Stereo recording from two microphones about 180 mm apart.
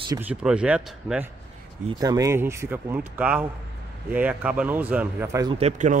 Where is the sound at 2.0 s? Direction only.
20° right (ahead or behind).